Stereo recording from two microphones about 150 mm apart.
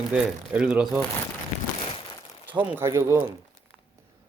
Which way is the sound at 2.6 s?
15° right (ahead or behind).